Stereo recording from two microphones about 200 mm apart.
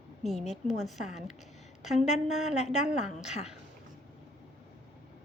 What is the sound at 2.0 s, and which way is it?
Speech, 35° left (ahead or behind).